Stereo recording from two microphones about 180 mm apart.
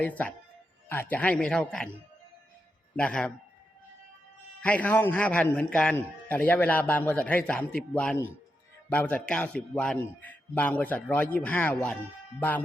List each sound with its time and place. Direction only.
0.0 s a man's voice: 10° left (ahead or behind)
2.9 s a man's voice: 5° left (ahead or behind)
4.6 s a man's voice: 10° left (ahead or behind)